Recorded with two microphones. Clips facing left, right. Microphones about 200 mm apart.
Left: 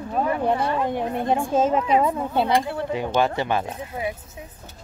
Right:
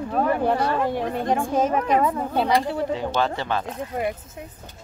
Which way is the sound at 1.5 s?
25° left (ahead or behind).